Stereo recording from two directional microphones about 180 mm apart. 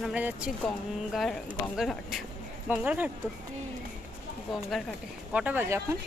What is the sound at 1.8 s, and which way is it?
Speech, centre (ahead or behind).